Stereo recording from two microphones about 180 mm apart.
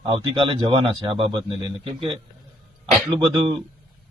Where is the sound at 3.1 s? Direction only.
25° right (ahead or behind).